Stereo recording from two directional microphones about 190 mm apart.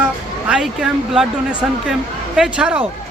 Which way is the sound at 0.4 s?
5° right (ahead or behind).